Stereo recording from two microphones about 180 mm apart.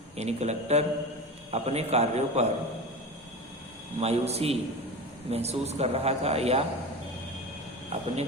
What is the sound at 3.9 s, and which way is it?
A man's voice, 35° right (ahead or behind).